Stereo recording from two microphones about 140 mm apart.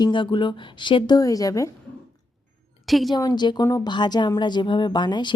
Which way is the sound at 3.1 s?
30° left (ahead or behind).